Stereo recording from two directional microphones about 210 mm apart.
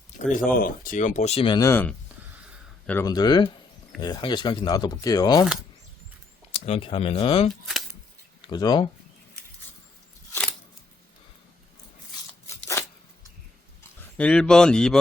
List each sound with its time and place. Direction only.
0.4 s speech: 40° left (ahead or behind); by 5.5 s 20° left (ahead or behind)
6.5 s speech: 25° left (ahead or behind)
12.5 s a sound: 15° left (ahead or behind)
14.2 s speech: 5° left (ahead or behind)